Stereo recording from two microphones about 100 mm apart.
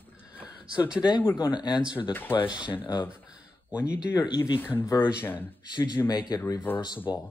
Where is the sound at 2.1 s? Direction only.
20° left (ahead or behind).